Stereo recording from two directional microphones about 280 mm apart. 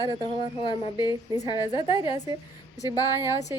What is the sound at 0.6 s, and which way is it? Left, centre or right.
A woman's voice, centre.